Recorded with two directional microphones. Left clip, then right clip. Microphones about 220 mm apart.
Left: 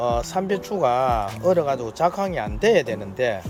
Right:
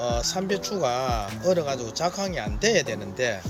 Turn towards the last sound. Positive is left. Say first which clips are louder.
# left 3 dB
turn(degrees=15)  # may be behind; listen again after turning